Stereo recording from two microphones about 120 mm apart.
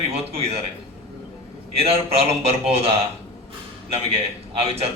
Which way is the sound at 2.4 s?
55° right (ahead or behind).